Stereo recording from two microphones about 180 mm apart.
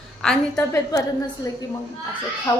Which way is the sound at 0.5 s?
20° left (ahead or behind).